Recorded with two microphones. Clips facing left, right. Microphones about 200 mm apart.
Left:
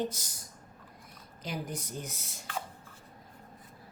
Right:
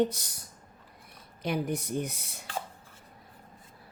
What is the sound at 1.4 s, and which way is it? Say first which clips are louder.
Speech: right 7 dB; 65° right (ahead or behind).